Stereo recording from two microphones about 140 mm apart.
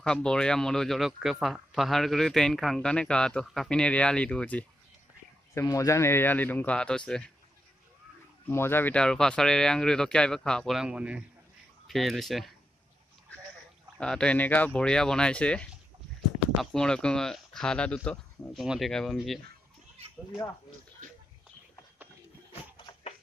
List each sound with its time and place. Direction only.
0.0 s speech: 5° left (ahead or behind)
5.5 s speech: 20° left (ahead or behind); by 7.3 s 5° left (ahead or behind)
8.5 s speech: 15° left (ahead or behind); by 12.5 s centre (ahead or behind)
13.9 s speech: 5° left (ahead or behind)
16.7 s speech: 5° left (ahead or behind)